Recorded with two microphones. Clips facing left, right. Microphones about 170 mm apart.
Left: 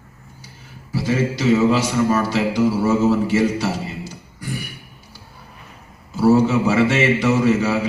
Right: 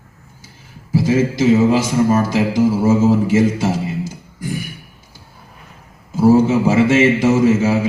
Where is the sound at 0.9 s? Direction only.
45° right (ahead or behind).